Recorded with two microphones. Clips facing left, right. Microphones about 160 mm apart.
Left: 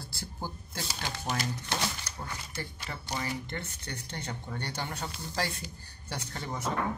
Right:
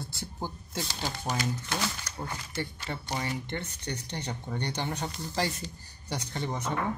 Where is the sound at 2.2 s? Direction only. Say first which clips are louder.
Right 5 dB; 25° right (ahead or behind).